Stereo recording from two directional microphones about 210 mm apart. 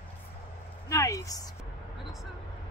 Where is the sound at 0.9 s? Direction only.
15° left (ahead or behind).